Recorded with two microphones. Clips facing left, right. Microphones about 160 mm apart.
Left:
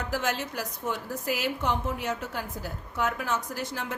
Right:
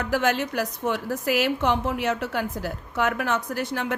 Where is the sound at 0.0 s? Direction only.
65° right (ahead or behind).